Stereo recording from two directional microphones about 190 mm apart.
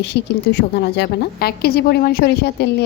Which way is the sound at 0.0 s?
65° left (ahead or behind).